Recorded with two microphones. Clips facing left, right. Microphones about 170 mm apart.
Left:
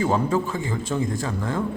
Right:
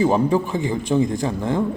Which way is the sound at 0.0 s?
15° right (ahead or behind).